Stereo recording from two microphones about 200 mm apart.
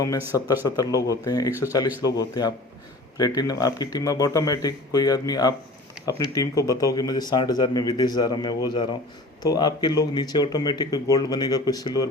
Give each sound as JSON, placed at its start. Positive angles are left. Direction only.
{"t": 0.3, "sound": "speech", "side_deg": 20}